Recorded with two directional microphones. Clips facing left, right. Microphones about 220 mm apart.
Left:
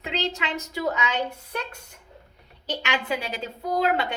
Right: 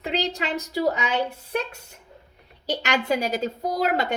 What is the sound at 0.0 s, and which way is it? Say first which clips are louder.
Speech: right 2 dB; 35° right (ahead or behind).